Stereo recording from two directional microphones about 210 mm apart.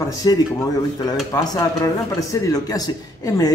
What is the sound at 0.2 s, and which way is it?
A man's voice, 15° left (ahead or behind).